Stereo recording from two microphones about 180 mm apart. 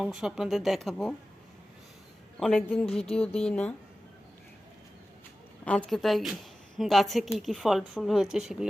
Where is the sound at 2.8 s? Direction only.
35° left (ahead or behind).